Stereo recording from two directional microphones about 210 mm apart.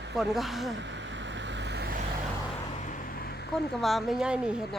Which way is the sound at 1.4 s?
60° right (ahead or behind).